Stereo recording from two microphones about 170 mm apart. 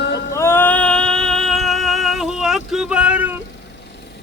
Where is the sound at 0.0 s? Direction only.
90° left.